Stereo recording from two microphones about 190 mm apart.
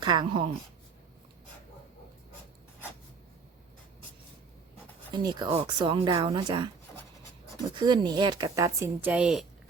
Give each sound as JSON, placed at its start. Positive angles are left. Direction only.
{"t": 0.0, "sound": "a woman's voice", "side_deg": -25}
{"t": 5.1, "sound": "speech", "side_deg": -20}
{"t": 7.8, "sound": "a woman's voice", "side_deg": -25}